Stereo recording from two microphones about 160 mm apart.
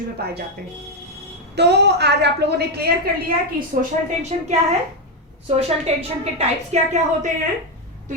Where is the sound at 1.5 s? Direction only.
90° right.